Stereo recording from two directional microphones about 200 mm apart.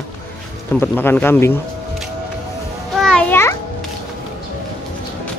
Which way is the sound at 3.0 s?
10° left (ahead or behind).